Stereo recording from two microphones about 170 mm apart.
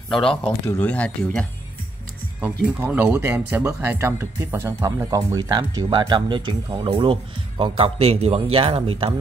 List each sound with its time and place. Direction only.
0.1 s speech: 5° left (ahead or behind)
2.4 s speech: 10° right (ahead or behind); by 9.1 s 35° right (ahead or behind)